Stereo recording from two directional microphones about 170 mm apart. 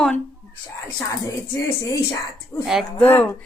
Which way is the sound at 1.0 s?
20° left (ahead or behind).